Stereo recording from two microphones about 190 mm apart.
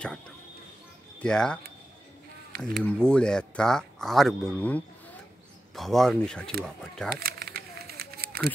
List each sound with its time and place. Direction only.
1.2 s speech: 5° left (ahead or behind)
2.6 s speech: 5° left (ahead or behind)
7.2 s a sound: 55° right (ahead or behind)